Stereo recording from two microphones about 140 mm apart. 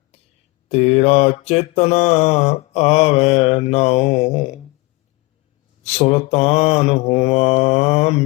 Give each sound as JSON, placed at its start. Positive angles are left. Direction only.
{"t": 0.1, "sound": "a sound", "side_deg": 50}
{"t": 0.7, "sound": "mantra", "side_deg": 50}
{"t": 5.8, "sound": "mantra", "side_deg": 50}